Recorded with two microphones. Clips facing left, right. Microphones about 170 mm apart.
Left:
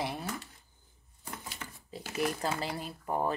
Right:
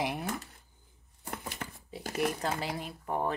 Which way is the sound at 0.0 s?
20° right (ahead or behind).